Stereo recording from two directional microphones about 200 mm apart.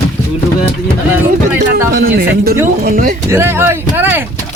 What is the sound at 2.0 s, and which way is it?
Speech, 50° right (ahead or behind).